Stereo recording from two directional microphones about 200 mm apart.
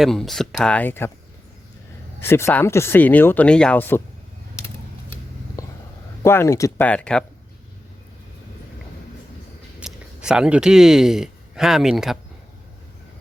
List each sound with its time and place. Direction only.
0.0 s speech: centre (ahead or behind)
2.2 s speech: 10° left (ahead or behind)
5.6 s a sound: 15° left (ahead or behind)
6.2 s speech: 15° left (ahead or behind)
9.8 s a man's voice: 5° right (ahead or behind)